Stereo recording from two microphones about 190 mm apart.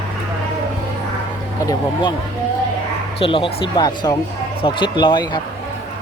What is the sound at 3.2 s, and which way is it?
Speech, 25° left (ahead or behind).